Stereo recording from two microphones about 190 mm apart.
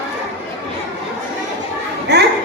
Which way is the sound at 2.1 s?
60° right (ahead or behind).